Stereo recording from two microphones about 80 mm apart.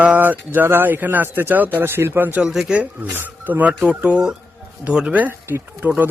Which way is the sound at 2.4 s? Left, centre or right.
Centre.